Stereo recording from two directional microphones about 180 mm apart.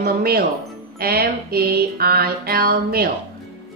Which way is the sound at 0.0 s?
60° right (ahead or behind).